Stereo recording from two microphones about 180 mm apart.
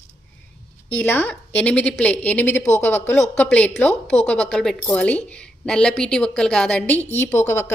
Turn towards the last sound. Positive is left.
turn(degrees=15)  # may be behind; listen again after turning